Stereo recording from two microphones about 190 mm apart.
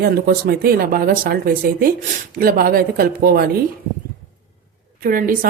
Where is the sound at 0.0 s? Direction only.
55° right (ahead or behind).